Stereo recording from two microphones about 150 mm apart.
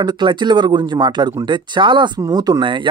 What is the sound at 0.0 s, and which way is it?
Speech, 30° right (ahead or behind).